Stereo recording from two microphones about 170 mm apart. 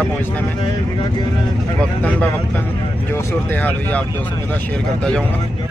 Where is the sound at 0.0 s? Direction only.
10° left (ahead or behind).